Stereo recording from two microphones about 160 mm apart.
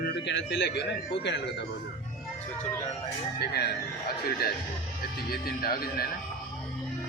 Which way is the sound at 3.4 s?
85° left.